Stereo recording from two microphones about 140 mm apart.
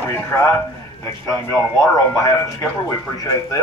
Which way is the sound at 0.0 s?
15° left (ahead or behind).